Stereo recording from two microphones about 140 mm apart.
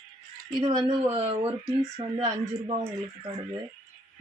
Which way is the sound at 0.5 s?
30° right (ahead or behind).